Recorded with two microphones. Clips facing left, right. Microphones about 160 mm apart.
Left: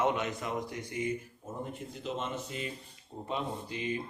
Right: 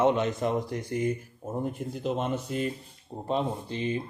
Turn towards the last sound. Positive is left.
turn(degrees=-30)  # may be behind; listen again after turning